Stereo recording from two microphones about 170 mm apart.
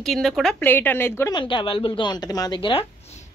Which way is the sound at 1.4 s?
30° left (ahead or behind).